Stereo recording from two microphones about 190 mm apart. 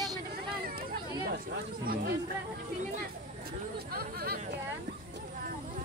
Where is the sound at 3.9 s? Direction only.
55° right (ahead or behind).